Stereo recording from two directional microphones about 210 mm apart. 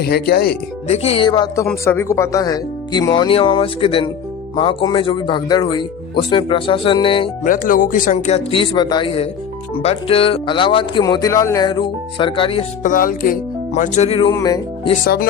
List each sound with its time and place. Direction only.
0.0 s speech: 50° left (ahead or behind)
0.9 s speech: 30° left (ahead or behind)
7.4 s speech: 40° left (ahead or behind); by 12.6 s 25° left (ahead or behind)
12.8 s speech: 40° left (ahead or behind)
14.3 s speech: 15° left (ahead or behind)
15.0 s speech: 45° left (ahead or behind)